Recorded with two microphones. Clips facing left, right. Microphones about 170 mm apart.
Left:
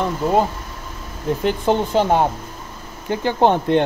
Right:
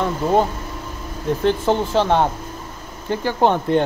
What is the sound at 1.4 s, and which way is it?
Speech, 15° left (ahead or behind).